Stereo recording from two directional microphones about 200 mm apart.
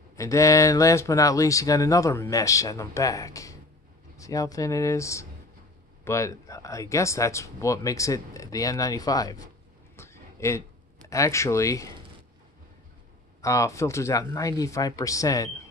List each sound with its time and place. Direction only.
0.1 s speech: 15° left (ahead or behind)
9.9 s a sound: 15° left (ahead or behind)
11.1 s speech: 15° left (ahead or behind)
13.4 s speech: 15° left (ahead or behind)